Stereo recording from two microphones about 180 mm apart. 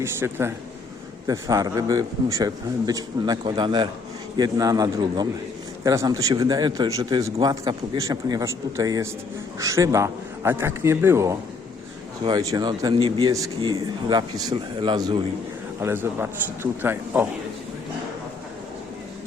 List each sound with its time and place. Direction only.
0.0 s a man's voice: 15° right (ahead or behind)
15.8 s a man's voice: 15° right (ahead or behind)